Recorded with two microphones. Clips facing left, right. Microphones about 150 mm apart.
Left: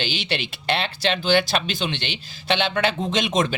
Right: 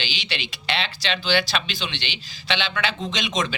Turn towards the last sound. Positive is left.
turn(degrees=50)  # may be behind; listen again after turning